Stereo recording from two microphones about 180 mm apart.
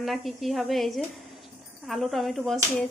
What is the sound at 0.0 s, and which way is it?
Speech, centre (ahead or behind).